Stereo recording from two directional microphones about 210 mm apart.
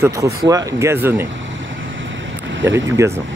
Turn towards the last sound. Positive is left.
turn(degrees=-15)  # may be behind; listen again after turning